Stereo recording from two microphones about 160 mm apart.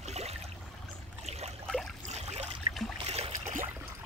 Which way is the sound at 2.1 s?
45° right (ahead or behind).